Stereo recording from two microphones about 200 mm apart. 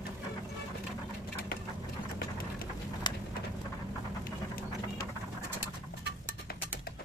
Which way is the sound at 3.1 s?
20° left (ahead or behind).